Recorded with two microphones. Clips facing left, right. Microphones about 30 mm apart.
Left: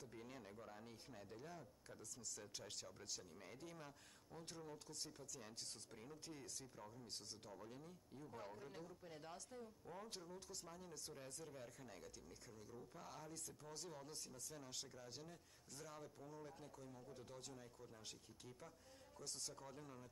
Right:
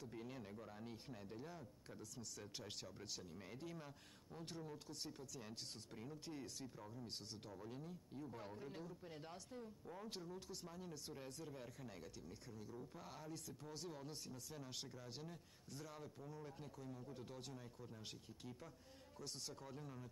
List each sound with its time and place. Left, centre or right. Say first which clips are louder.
0.0 s speech: right 4 dB; centre